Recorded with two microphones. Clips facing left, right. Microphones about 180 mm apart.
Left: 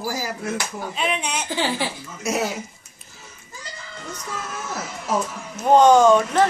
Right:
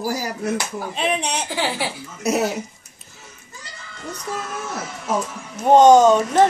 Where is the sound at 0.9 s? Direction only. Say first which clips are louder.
Right 3 dB; 35° right (ahead or behind).